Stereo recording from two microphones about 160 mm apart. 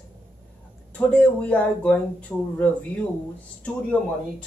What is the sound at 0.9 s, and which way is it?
Speech, 10° left (ahead or behind).